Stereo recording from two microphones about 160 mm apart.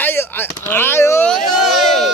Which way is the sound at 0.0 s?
15° left (ahead or behind).